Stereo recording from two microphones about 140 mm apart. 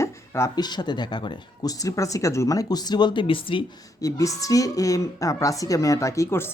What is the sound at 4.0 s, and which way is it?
A woman's voice, 25° left (ahead or behind).